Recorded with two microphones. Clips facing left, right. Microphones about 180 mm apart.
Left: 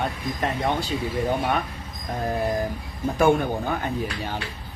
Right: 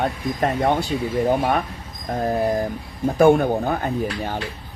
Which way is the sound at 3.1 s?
40° right (ahead or behind).